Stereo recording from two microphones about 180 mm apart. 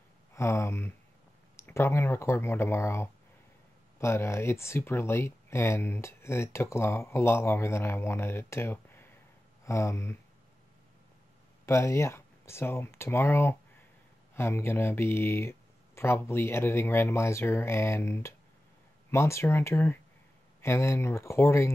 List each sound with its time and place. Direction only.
0.3 s speech: 15° left (ahead or behind)
11.6 s speech: 15° left (ahead or behind)